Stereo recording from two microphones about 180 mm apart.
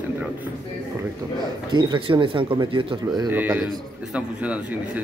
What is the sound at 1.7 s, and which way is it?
Speech, 25° right (ahead or behind).